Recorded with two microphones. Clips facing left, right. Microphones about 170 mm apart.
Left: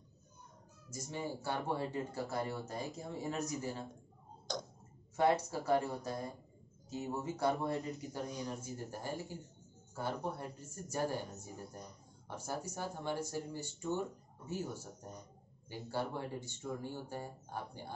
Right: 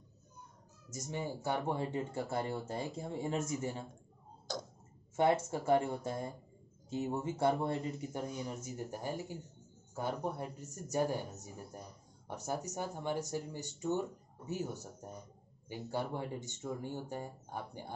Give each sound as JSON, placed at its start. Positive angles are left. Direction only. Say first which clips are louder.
{"t": 0.9, "sound": "speech", "louder": "right 1 dB", "side_deg": -20}
{"t": 4.5, "sound": "tick-tock", "louder": "even", "side_deg": -5}
{"t": 5.1, "sound": "speech", "louder": "right 1 dB", "side_deg": -25}
{"t": 11.7, "sound": "a sound", "louder": "right 1 dB", "side_deg": -10}
{"t": 12.4, "sound": "speech", "louder": "right 3 dB", "side_deg": -20}
{"t": 15.0, "sound": "speech", "louder": "right 2 dB", "side_deg": -5}
{"t": 15.7, "sound": "speech", "louder": "right 1 dB", "side_deg": -15}